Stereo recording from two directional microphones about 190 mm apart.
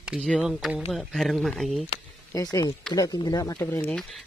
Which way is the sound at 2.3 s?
20° left (ahead or behind).